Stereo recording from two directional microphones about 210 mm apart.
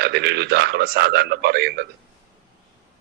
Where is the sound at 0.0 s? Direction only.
50° right (ahead or behind).